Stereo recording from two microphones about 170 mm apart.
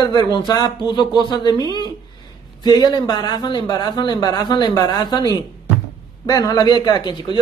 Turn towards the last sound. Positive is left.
turn(degrees=25)  # may be behind; listen again after turning